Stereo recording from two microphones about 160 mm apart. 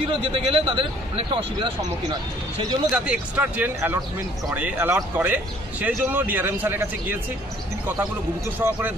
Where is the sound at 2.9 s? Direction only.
10° right (ahead or behind).